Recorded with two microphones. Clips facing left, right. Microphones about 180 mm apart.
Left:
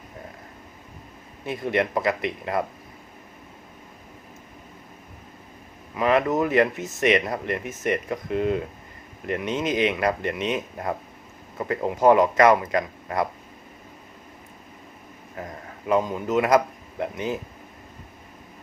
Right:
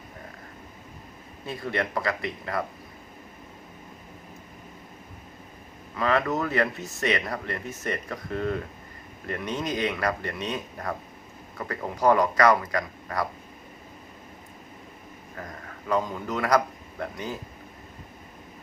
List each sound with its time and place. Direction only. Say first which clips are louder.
1.5 s speech: left 5 dB; 20° left (ahead or behind)
6.0 s speech: left 4 dB; 20° left (ahead or behind)
15.4 s speech: left 4 dB; 20° left (ahead or behind)